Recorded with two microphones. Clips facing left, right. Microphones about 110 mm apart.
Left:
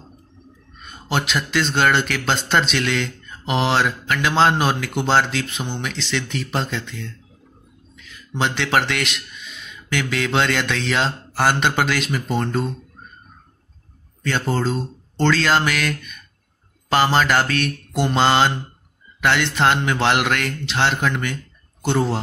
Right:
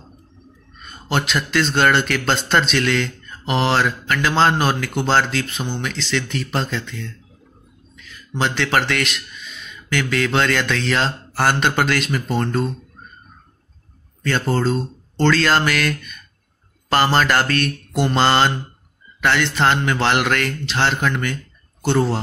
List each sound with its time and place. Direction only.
0.8 s speech: 10° left (ahead or behind)
8.4 s speech: 15° left (ahead or behind)
14.2 s speech: 10° left (ahead or behind)